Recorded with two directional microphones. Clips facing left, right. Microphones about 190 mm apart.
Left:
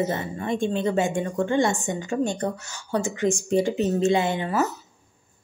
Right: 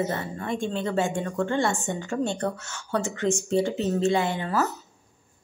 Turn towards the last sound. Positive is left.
turn(degrees=15)  # may be behind; listen again after turning